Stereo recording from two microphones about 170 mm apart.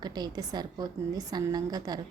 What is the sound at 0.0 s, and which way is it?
A woman's voice, 25° right (ahead or behind).